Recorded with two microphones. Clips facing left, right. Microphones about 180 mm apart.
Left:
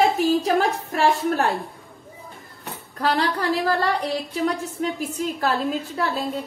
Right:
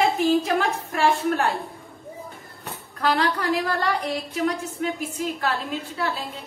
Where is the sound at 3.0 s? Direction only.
30° left (ahead or behind).